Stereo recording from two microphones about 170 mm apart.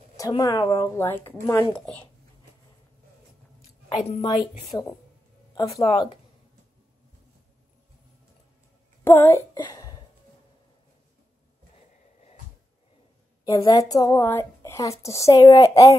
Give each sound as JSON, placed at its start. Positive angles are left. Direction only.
{"t": 0.2, "sound": "a woman's voice", "side_deg": 20}
{"t": 4.0, "sound": "a woman's voice", "side_deg": 40}
{"t": 5.8, "sound": "speech", "side_deg": 30}
{"t": 9.0, "sound": "a child's voice", "side_deg": 15}
{"t": 9.6, "sound": "a sound", "side_deg": 20}
{"t": 11.7, "sound": "a sound", "side_deg": 40}
{"t": 13.6, "sound": "speech", "side_deg": 20}